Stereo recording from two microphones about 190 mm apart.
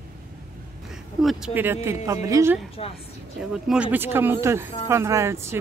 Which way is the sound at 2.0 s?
15° right (ahead or behind).